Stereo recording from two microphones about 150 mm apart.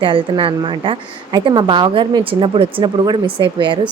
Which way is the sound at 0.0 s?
35° right (ahead or behind).